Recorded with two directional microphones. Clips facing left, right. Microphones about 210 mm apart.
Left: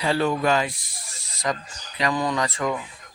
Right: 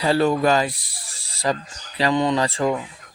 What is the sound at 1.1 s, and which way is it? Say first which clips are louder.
Cricket: right 4 dB; 30° right (ahead or behind).